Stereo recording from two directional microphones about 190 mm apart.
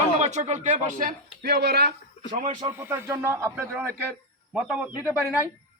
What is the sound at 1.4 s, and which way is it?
Speech, 55° right (ahead or behind).